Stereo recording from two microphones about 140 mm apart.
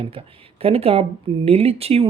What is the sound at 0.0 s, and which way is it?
Speech, 40° right (ahead or behind).